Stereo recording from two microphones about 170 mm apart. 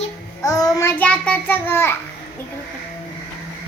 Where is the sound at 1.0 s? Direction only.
5° left (ahead or behind).